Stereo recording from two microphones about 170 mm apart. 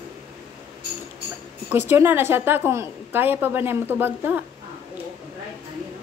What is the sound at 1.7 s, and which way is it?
A woman's voice, 15° right (ahead or behind).